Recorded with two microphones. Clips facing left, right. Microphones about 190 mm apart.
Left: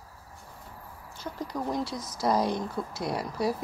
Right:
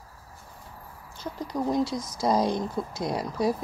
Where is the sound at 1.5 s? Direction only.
15° right (ahead or behind).